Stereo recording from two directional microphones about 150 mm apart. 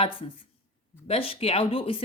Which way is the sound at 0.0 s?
35° left (ahead or behind).